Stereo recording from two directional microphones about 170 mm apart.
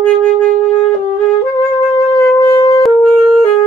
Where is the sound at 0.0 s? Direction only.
10° left (ahead or behind).